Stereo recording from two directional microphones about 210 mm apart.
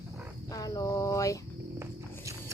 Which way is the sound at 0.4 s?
15° left (ahead or behind).